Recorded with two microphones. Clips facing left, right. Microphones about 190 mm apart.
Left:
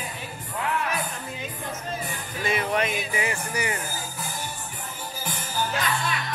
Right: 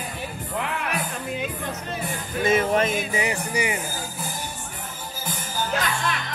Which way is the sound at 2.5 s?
45° right (ahead or behind).